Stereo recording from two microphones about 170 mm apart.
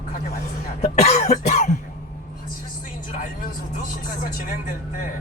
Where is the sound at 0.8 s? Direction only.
40° left (ahead or behind).